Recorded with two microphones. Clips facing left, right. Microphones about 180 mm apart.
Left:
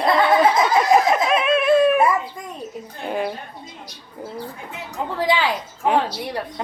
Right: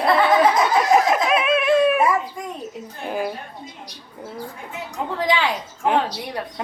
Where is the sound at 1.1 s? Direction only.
5° right (ahead or behind).